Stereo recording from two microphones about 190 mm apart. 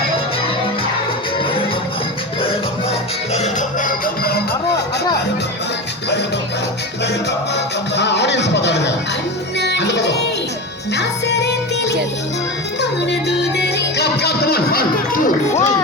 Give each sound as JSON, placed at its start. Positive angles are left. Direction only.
{"t": 3.3, "sound": "music", "side_deg": 40}
{"t": 7.0, "sound": "music", "side_deg": 65}